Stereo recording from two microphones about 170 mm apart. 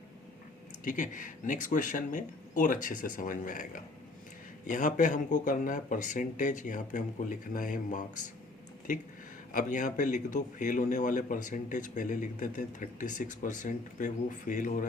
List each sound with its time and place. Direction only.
0.9 s a man's voice: 50° left (ahead or behind)
9.5 s a man's voice: 50° left (ahead or behind)